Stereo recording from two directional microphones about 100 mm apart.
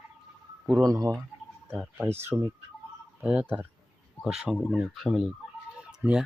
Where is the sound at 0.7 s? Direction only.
35° right (ahead or behind).